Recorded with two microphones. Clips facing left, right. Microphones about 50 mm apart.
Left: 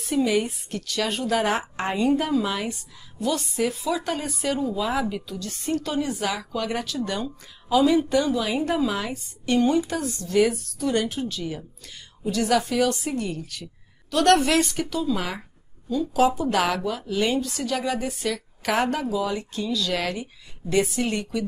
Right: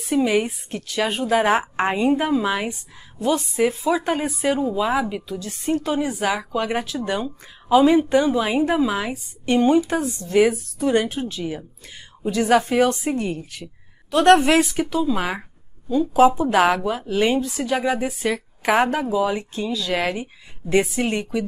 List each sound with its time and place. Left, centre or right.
0.1 s a woman's voice: centre
8.6 s a woman's voice: centre